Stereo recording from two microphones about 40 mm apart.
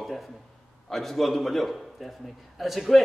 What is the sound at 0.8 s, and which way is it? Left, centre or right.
A man's voice, centre.